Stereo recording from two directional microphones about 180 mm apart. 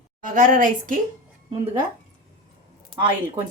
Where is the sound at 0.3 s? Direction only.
50° right (ahead or behind).